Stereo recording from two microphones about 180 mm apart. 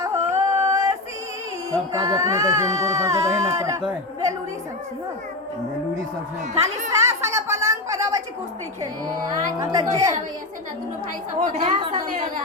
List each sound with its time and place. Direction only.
0.0 s a sound: 15° right (ahead or behind)
1.9 s speech: 20° right (ahead or behind)
6.9 s a sound: 15° right (ahead or behind)
8.8 s a woman's voice: 20° right (ahead or behind)
11.4 s a woman's voice: 40° right (ahead or behind)
11.8 s a woman's voice: 25° right (ahead or behind)